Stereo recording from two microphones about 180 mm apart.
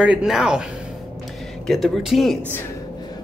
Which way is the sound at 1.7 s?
Centre (ahead or behind).